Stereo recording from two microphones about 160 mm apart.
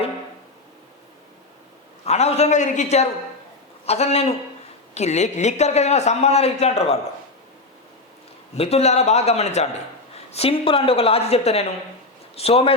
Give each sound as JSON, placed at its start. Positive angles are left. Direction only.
{"t": 2.0, "sound": "a woman's voice", "side_deg": 45}
{"t": 8.5, "sound": "a woman's voice", "side_deg": 40}